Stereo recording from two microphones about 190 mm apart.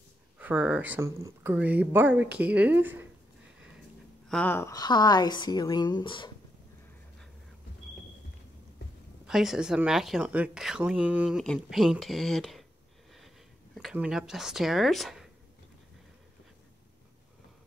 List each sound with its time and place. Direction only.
0.4 s speech: 5° right (ahead or behind)
4.3 s a woman's voice: 10° left (ahead or behind); by 6.3 s 25° left (ahead or behind)
9.2 s speech: centre (ahead or behind)
13.7 s speech: 5° right (ahead or behind)